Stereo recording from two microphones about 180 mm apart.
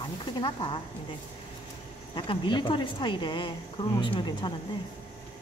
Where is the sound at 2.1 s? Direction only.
25° left (ahead or behind).